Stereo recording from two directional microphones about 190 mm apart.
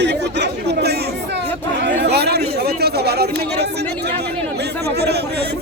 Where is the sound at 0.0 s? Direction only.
65° right (ahead or behind).